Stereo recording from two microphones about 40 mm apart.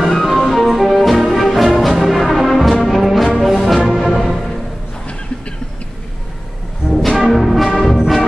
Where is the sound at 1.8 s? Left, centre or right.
Centre.